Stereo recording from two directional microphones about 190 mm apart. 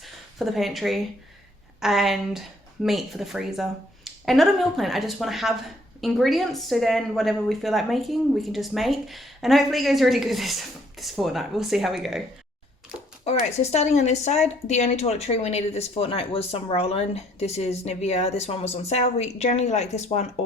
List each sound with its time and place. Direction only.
0.0 s speech: centre (ahead or behind)
13.2 s speech: 35° left (ahead or behind)